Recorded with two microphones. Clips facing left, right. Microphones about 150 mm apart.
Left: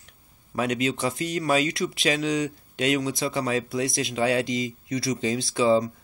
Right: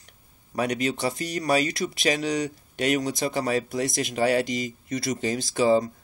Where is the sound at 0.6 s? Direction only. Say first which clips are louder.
Even; 40° right (ahead or behind).